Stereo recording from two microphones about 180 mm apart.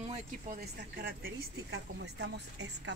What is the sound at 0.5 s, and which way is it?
Speech, 55° right (ahead or behind).